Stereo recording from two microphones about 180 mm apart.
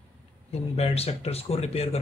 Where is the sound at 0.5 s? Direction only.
35° left (ahead or behind).